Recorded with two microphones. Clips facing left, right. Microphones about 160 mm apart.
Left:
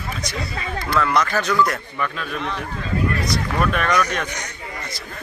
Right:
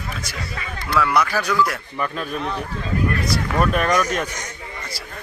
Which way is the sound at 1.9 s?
35° right (ahead or behind).